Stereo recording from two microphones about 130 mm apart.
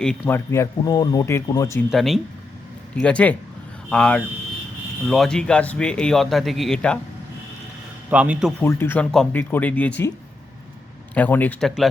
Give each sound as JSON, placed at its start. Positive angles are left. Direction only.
{"t": 0.3, "sound": "speech", "side_deg": 20}
{"t": 1.9, "sound": "speech", "side_deg": 0}
{"t": 8.1, "sound": "speech", "side_deg": -10}
{"t": 8.6, "sound": "speech", "side_deg": 15}
{"t": 11.1, "sound": "speech", "side_deg": 15}